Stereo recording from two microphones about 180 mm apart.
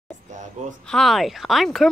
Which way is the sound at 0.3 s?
45° right (ahead or behind).